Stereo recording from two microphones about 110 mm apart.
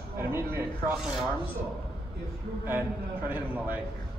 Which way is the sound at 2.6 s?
20° right (ahead or behind).